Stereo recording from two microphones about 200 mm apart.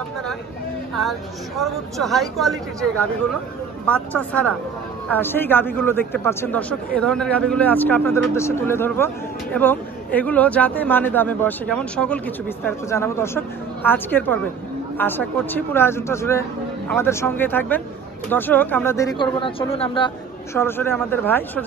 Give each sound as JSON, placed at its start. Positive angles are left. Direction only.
{"t": 1.6, "sound": "speech", "side_deg": 0}
{"t": 19.1, "sound": "a man's voice", "side_deg": 25}
{"t": 20.5, "sound": "speech", "side_deg": 10}